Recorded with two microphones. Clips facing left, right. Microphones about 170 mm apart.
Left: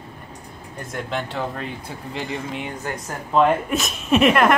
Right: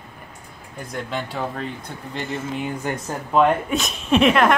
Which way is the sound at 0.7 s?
Centre (ahead or behind).